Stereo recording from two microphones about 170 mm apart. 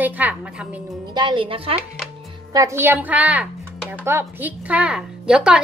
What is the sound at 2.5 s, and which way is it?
A woman's voice, 20° right (ahead or behind).